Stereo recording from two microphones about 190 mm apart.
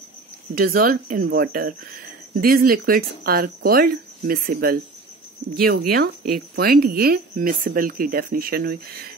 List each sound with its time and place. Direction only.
0.6 s speech: 50° right (ahead or behind)